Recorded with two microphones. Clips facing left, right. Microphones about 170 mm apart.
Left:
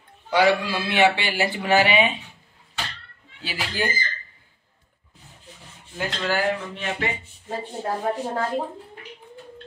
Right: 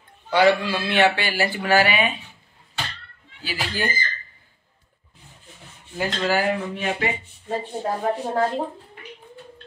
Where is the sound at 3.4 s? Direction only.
25° left (ahead or behind).